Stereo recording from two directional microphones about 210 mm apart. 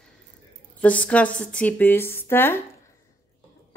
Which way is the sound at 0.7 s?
5° left (ahead or behind).